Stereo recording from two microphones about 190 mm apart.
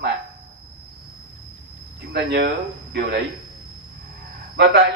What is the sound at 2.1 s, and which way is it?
Speech, 55° right (ahead or behind).